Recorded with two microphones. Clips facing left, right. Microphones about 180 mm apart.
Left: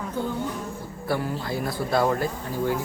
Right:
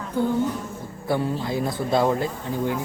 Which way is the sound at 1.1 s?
20° right (ahead or behind).